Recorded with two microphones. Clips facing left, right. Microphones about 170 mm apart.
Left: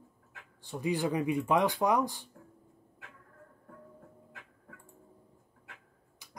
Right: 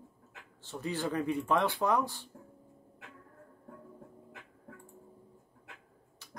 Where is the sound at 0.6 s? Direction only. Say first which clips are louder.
Left 4 dB; 15° left (ahead or behind).